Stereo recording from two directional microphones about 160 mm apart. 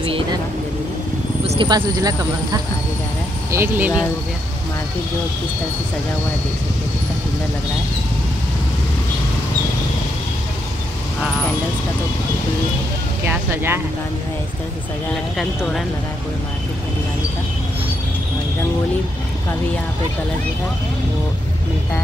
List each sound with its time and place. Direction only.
0.0 s vehicle: 30° right (ahead or behind)
1.4 s vehicle: 40° right (ahead or behind)
1.7 s speech: 25° right (ahead or behind)
3.5 s speech: 15° right (ahead or behind)
13.2 s speech: 15° right (ahead or behind)